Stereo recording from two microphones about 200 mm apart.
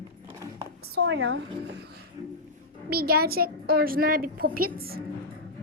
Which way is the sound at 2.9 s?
50° right (ahead or behind).